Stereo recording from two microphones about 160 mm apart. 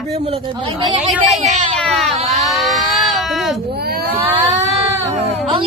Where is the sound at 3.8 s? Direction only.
80° right.